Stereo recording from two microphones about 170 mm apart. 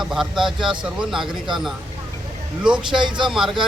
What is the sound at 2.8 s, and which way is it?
Speech, 30° right (ahead or behind).